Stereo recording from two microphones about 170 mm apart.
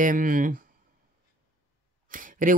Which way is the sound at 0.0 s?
50° right (ahead or behind).